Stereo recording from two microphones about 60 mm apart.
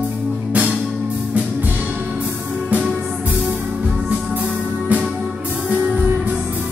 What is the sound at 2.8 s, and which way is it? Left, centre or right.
Music, centre.